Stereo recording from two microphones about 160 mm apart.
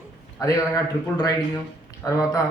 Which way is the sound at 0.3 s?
20° left (ahead or behind).